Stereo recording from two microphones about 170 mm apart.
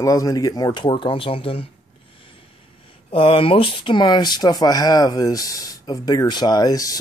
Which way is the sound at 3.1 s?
30° left (ahead or behind).